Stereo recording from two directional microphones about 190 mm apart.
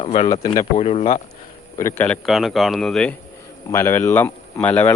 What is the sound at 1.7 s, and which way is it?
Speech, 15° left (ahead or behind).